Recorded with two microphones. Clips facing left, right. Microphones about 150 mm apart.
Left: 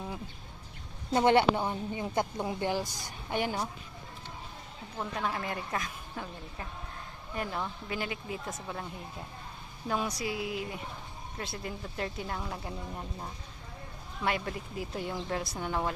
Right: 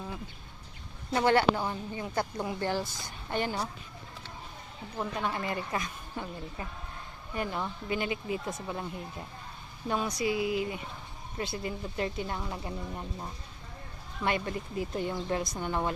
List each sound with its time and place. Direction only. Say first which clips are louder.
1.1 s speech: left 1 dB; 20° left (ahead or behind)
4.9 s speech: right 1 dB; centre (ahead or behind)